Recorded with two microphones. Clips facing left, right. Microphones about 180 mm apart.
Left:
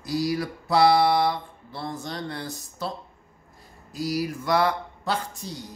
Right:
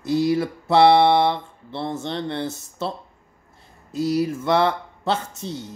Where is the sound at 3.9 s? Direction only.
25° right (ahead or behind).